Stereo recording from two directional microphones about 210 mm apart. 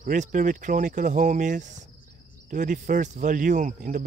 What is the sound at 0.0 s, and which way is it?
Speech, 35° right (ahead or behind).